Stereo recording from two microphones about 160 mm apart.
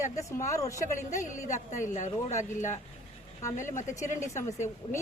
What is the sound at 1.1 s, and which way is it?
A woman's voice, 50° left (ahead or behind).